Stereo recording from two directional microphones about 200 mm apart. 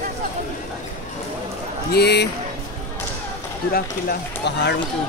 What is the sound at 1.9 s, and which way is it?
Speech, 55° left (ahead or behind).